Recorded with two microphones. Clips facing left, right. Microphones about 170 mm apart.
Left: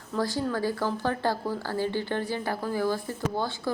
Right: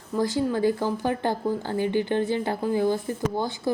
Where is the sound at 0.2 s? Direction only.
20° right (ahead or behind).